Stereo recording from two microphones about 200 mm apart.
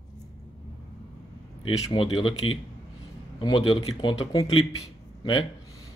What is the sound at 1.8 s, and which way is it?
Speech, 25° left (ahead or behind).